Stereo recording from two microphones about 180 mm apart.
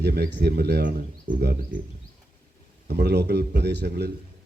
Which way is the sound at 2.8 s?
65° right (ahead or behind).